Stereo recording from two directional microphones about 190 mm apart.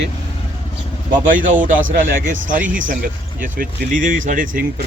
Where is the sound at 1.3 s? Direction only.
45° right (ahead or behind).